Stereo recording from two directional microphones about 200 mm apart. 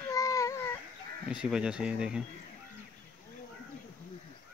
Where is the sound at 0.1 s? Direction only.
15° left (ahead or behind).